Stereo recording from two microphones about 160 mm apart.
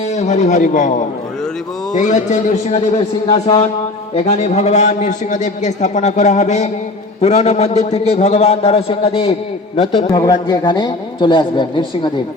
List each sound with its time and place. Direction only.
0.1 s a man's voice: 45° left (ahead or behind)
10.1 s a man's voice: 25° left (ahead or behind)